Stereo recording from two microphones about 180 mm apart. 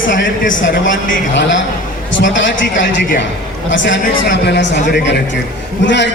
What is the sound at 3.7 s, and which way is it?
A man's voice, 90° left.